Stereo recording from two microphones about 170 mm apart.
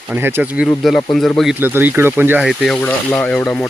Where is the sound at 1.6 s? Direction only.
10° right (ahead or behind); by 3.6 s 5° left (ahead or behind).